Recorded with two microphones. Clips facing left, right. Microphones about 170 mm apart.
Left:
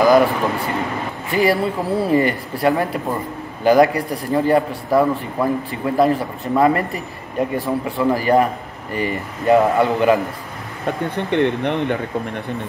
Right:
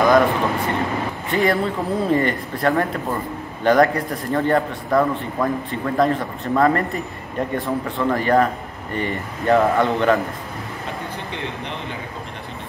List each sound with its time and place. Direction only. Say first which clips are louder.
0.0 s a man's voice: left 2 dB; centre (ahead or behind)
11.1 s speech: left 11 dB; 60° left (ahead or behind)